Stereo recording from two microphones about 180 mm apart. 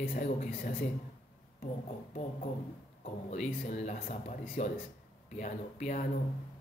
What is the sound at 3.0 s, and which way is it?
Speech, 40° left (ahead or behind).